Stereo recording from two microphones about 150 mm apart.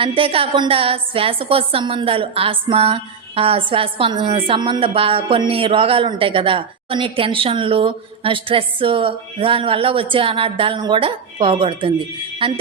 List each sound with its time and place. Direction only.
0.0 s speech: 35° right (ahead or behind)